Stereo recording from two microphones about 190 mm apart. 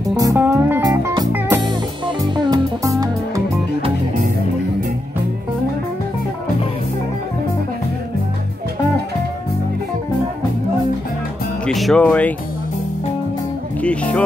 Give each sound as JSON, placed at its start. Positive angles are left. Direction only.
{"t": 0.1, "sound": "music", "side_deg": -20}
{"t": 11.6, "sound": "speech", "side_deg": 0}
{"t": 13.7, "sound": "speech", "side_deg": 5}